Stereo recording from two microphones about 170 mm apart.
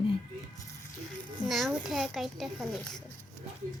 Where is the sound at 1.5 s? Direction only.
Centre (ahead or behind).